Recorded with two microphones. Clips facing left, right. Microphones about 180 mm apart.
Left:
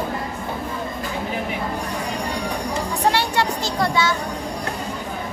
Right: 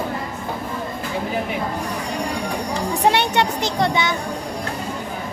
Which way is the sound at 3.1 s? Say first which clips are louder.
Right 2 dB; 20° right (ahead or behind).